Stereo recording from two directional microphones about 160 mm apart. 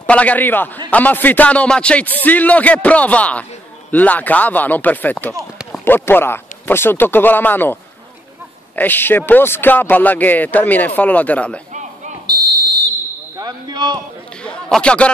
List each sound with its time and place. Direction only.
0.0 s a man's voice: 10° left (ahead or behind)
11.7 s a sound: 50° right (ahead or behind)
12.3 s fire alarm: 25° right (ahead or behind)
13.4 s speech: 25° right (ahead or behind)
14.4 s a man's voice: 5° left (ahead or behind)